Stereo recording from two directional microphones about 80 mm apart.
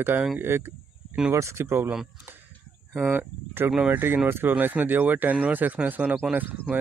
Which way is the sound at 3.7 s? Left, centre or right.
Centre.